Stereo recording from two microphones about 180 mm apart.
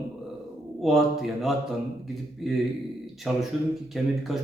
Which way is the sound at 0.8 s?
Centre (ahead or behind).